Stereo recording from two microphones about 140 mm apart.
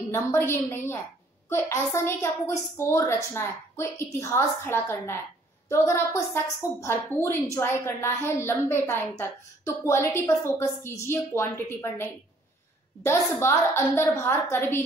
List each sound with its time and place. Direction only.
0.1 s a woman's voice: 20° left (ahead or behind)